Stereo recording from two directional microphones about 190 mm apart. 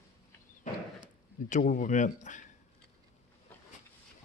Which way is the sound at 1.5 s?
45° left (ahead or behind).